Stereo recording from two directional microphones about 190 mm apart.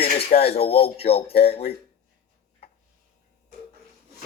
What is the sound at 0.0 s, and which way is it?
Speech, 30° left (ahead or behind).